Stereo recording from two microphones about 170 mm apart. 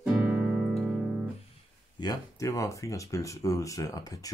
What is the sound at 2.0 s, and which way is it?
Speech, 20° left (ahead or behind).